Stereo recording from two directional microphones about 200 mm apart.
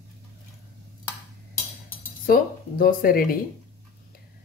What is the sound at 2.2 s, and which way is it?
Speech, 45° left (ahead or behind).